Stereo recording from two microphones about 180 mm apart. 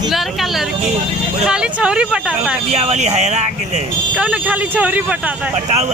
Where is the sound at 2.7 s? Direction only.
40° right (ahead or behind).